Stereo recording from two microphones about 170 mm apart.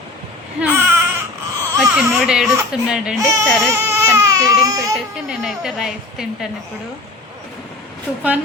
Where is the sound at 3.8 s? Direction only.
15° right (ahead or behind).